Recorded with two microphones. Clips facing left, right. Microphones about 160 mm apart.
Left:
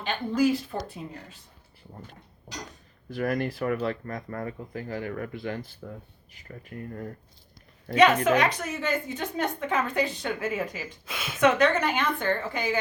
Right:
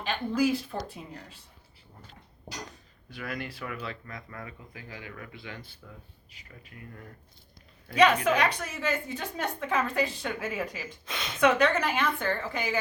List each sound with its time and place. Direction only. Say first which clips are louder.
0.0 s a woman's voice: left 2 dB; centre (ahead or behind)
3.2 s speech: left 9 dB; 45° left (ahead or behind)
7.9 s a woman's voice: left 2 dB; 5° left (ahead or behind)